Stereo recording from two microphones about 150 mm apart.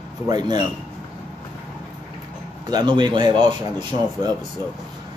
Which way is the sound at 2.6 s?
30° right (ahead or behind).